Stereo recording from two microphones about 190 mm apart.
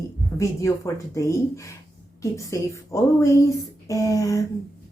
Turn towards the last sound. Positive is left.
turn(degrees=15)  # may be behind; listen again after turning